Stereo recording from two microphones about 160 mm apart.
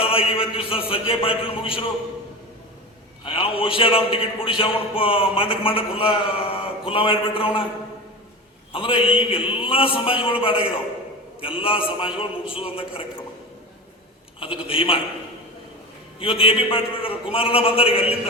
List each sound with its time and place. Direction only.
0.1 s a man's voice: 35° left (ahead or behind)
3.2 s a man's voice: 35° left (ahead or behind)
8.7 s a man's voice: 35° left (ahead or behind)
14.3 s a man's voice: 35° left (ahead or behind)
16.2 s a man's voice: 35° left (ahead or behind)